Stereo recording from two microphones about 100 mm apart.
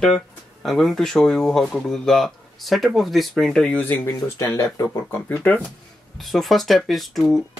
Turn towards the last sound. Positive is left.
turn(degrees=0)  # may be behind; listen again after turning